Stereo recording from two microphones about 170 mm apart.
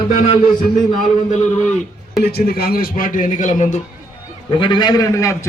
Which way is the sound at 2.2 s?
70° left (ahead or behind).